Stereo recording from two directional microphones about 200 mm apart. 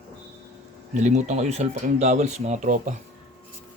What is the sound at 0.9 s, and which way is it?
Speech, 35° right (ahead or behind).